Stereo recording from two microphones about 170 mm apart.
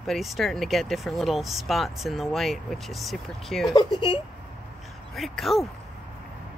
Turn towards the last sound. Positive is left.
turn(degrees=0)  # may be behind; listen again after turning